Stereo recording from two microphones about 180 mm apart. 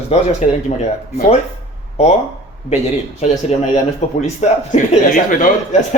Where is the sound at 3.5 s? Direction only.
40° left (ahead or behind).